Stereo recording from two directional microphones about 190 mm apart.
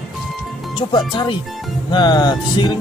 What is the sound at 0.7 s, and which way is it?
Speech, 25° left (ahead or behind).